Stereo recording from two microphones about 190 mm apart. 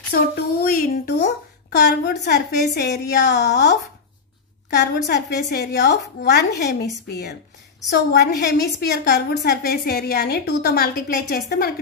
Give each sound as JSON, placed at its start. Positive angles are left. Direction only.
{"t": 0.1, "sound": "a child's voice", "side_deg": 50}